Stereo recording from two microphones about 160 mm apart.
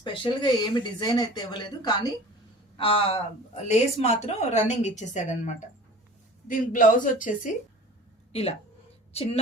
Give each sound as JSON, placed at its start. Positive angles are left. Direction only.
{"t": 0.0, "sound": "a woman's voice", "side_deg": 30}
{"t": 8.3, "sound": "a woman's voice", "side_deg": 40}